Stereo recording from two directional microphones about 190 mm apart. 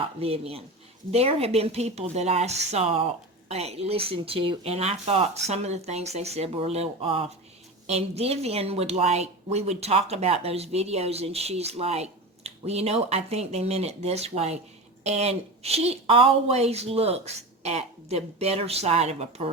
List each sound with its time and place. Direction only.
0.2 s a woman's voice: 30° right (ahead or behind)